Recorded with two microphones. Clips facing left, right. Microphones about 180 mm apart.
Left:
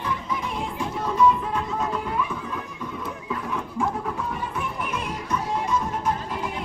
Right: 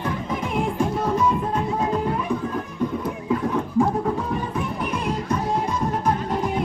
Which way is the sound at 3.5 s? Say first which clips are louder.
Right 4 dB; 35° right (ahead or behind).